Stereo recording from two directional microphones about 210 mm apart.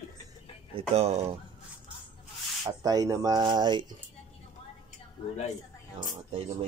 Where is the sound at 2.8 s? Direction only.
15° right (ahead or behind).